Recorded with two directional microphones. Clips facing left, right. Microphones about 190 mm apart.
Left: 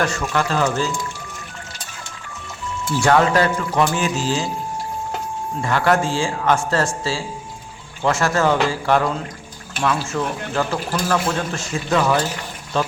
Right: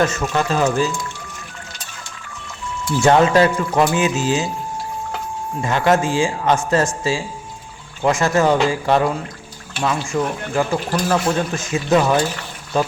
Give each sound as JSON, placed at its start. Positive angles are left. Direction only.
{"t": 0.0, "sound": "speech", "side_deg": -20}
{"t": 3.0, "sound": "speech", "side_deg": -20}
{"t": 5.6, "sound": "speech", "side_deg": -20}